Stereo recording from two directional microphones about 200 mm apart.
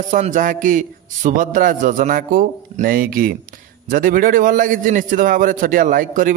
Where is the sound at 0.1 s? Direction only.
40° right (ahead or behind).